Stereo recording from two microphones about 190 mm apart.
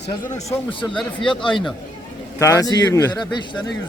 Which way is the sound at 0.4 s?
25° left (ahead or behind).